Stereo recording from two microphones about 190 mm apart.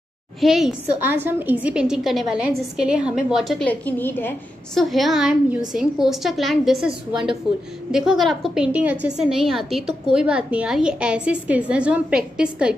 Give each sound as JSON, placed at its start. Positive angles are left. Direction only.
{"t": 0.4, "sound": "a woman's voice", "side_deg": 0}
{"t": 4.8, "sound": "a woman's voice", "side_deg": 0}